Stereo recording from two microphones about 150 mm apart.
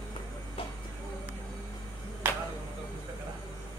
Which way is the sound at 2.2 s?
15° right (ahead or behind).